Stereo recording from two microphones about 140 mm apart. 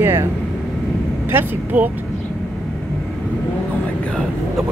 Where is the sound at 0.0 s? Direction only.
15° right (ahead or behind).